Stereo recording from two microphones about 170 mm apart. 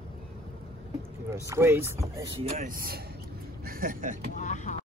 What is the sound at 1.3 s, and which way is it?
Speech, 15° right (ahead or behind).